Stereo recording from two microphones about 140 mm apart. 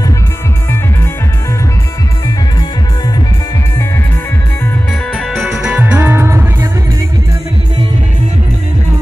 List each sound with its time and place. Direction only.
5.1 s music: centre (ahead or behind); by 6.7 s 20° right (ahead or behind)